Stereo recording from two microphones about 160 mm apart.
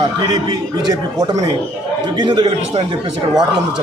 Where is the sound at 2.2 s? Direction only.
30° right (ahead or behind).